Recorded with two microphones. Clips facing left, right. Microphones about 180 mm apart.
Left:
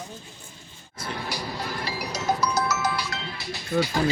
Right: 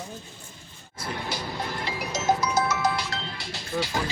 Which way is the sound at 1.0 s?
25° right (ahead or behind).